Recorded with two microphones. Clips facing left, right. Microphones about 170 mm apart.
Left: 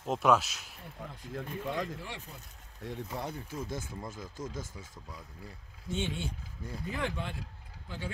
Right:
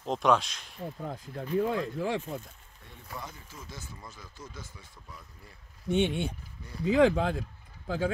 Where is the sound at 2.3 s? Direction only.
90° right.